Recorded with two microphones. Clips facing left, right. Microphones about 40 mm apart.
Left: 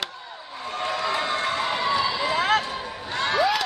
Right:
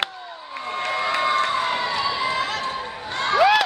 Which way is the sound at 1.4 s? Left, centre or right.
Centre.